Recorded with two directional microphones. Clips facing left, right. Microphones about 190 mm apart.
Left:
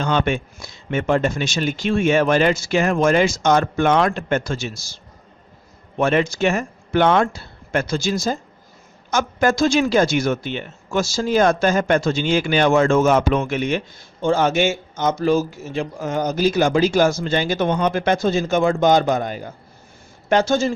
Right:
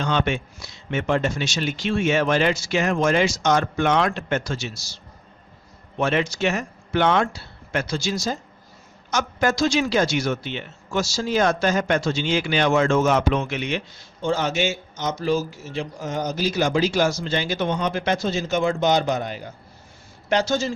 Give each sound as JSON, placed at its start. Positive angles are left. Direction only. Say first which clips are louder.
{"t": 0.0, "sound": "speech", "louder": "left 3 dB", "side_deg": 50}
{"t": 6.0, "sound": "speech", "louder": "left 4 dB", "side_deg": 50}